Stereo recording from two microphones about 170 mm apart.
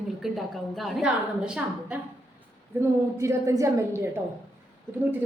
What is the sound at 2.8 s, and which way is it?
A woman's voice, 15° right (ahead or behind).